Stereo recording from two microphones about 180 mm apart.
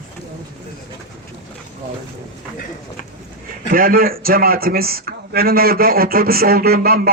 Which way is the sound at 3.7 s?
55° right (ahead or behind).